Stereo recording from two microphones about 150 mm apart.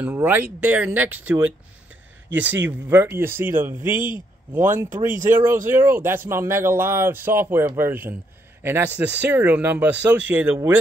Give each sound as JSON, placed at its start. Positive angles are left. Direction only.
{"t": 0.0, "sound": "a man's voice", "side_deg": -15}